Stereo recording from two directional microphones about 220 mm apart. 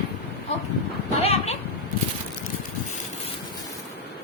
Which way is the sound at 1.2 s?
30° left (ahead or behind).